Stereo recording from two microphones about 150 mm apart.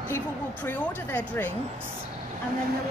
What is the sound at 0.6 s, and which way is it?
Speech, 15° left (ahead or behind).